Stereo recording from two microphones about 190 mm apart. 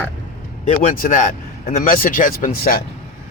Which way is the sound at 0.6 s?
40° left (ahead or behind).